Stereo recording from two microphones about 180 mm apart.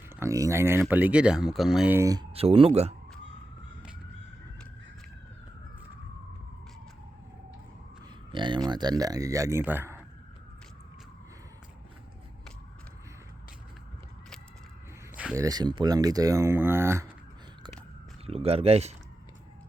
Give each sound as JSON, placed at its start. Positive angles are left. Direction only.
{"t": 0.2, "sound": "speech", "side_deg": -15}
{"t": 2.3, "sound": "speech", "side_deg": -35}
{"t": 8.3, "sound": "speech", "side_deg": -25}
{"t": 15.1, "sound": "a sound", "side_deg": -5}
{"t": 15.4, "sound": "speech", "side_deg": -25}
{"t": 18.3, "sound": "speech", "side_deg": -35}